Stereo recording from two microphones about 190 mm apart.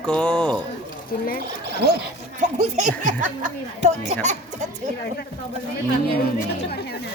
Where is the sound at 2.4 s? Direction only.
40° right (ahead or behind).